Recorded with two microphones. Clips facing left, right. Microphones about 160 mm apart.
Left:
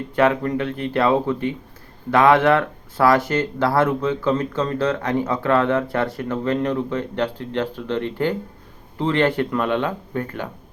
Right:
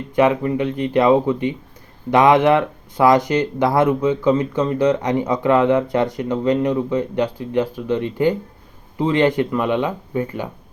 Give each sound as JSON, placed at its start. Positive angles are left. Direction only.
{"t": 0.2, "sound": "speech", "side_deg": -15}